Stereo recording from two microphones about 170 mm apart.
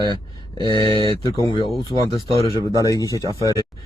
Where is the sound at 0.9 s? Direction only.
30° left (ahead or behind).